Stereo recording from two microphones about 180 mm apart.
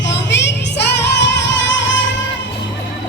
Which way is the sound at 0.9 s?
75° left (ahead or behind).